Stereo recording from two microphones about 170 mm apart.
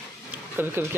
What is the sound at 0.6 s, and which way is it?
Speech, 10° right (ahead or behind).